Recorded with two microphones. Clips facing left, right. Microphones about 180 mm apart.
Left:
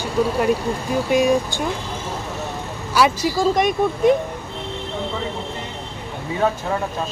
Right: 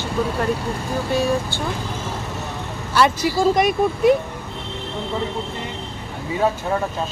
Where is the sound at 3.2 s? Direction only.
5° right (ahead or behind).